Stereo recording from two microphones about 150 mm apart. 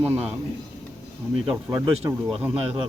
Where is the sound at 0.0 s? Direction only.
10° right (ahead or behind).